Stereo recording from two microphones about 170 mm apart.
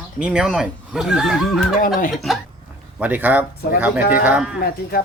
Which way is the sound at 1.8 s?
55° left (ahead or behind).